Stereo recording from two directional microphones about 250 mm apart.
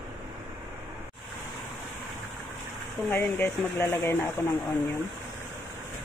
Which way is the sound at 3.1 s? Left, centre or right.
Centre.